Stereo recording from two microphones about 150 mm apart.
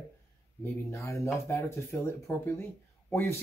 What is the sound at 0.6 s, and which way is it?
Speech, 15° left (ahead or behind).